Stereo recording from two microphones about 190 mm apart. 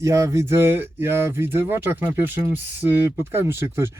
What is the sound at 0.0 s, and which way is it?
Speech, 15° right (ahead or behind).